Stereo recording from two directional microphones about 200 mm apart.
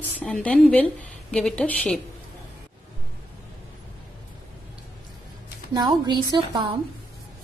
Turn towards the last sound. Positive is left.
turn(degrees=-20)  # may be behind; listen again after turning